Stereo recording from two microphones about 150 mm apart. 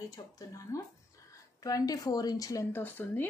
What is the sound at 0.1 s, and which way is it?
Speech, 20° left (ahead or behind).